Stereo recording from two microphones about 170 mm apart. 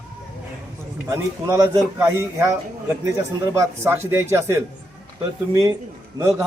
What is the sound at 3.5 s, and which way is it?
A man's voice, 15° right (ahead or behind).